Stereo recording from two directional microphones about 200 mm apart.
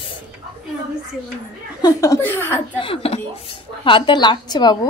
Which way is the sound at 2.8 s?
30° left (ahead or behind).